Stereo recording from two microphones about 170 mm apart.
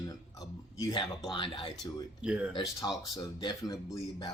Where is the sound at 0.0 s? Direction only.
20° left (ahead or behind).